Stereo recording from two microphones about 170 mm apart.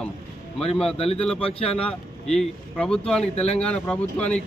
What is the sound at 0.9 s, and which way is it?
Speech, 35° left (ahead or behind).